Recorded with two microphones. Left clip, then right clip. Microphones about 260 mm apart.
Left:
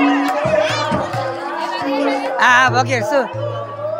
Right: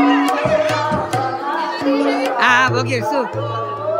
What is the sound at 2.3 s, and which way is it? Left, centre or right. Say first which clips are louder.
Music: left 3 dB; centre.